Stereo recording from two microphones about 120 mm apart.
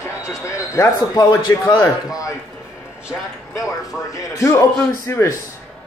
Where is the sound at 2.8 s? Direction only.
10° right (ahead or behind).